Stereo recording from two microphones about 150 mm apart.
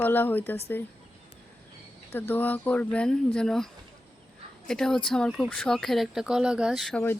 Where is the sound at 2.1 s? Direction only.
15° left (ahead or behind).